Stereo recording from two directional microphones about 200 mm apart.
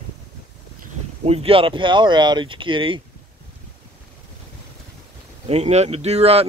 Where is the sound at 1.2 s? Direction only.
30° right (ahead or behind).